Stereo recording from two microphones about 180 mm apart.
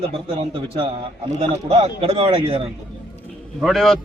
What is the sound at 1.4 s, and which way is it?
A man's voice, 35° right (ahead or behind).